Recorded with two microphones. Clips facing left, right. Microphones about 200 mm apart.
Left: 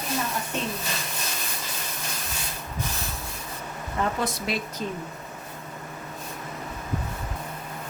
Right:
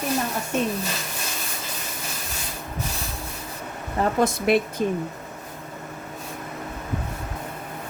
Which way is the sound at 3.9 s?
40° right (ahead or behind).